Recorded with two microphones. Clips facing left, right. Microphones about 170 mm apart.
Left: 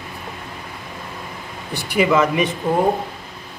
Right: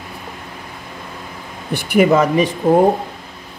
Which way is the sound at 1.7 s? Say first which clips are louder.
Right 5 dB; 50° right (ahead or behind).